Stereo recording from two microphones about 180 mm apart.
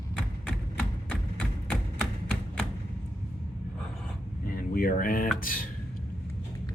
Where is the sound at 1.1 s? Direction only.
5° left (ahead or behind).